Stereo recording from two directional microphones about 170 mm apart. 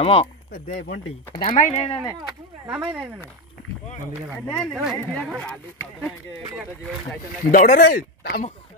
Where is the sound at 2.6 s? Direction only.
5° right (ahead or behind).